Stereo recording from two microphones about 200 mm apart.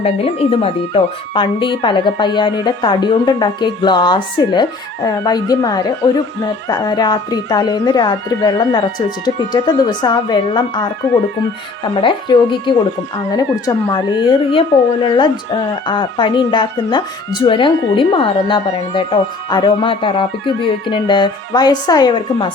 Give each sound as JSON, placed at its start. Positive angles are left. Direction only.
{"t": 0.0, "sound": "speech", "side_deg": 30}
{"t": 11.9, "sound": "speech", "side_deg": 25}